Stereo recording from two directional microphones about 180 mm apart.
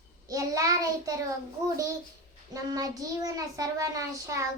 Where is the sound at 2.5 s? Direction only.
20° right (ahead or behind).